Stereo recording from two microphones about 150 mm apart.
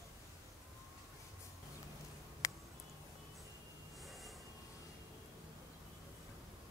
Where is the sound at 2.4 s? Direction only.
20° left (ahead or behind).